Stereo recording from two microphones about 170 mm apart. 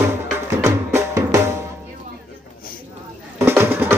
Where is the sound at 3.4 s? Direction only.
15° right (ahead or behind).